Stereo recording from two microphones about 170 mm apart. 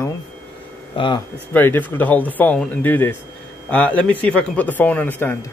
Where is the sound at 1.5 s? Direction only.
10° left (ahead or behind).